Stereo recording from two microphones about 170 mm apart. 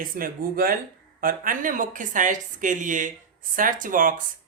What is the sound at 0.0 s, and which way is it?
Speech, 55° right (ahead or behind).